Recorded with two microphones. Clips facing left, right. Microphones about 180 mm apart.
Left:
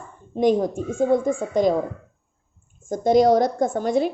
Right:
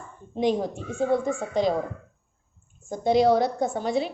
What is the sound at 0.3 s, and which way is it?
A woman's voice, 45° left (ahead or behind).